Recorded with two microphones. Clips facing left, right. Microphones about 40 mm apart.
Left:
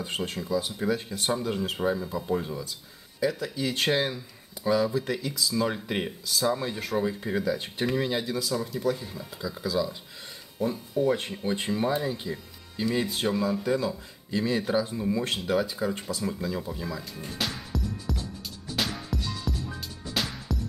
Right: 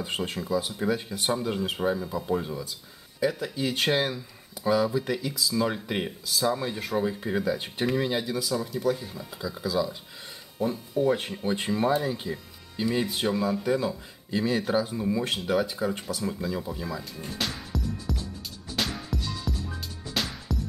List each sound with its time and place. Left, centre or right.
0.0 s speech: centre
0.4 s speech: centre
18.8 s music: centre